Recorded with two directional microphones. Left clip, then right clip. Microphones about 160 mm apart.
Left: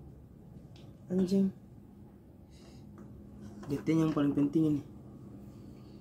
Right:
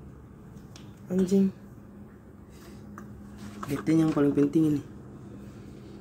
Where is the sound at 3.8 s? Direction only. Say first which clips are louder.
Right 6 dB; centre (ahead or behind).